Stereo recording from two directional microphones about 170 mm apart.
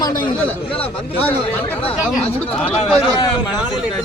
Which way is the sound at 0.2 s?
25° left (ahead or behind).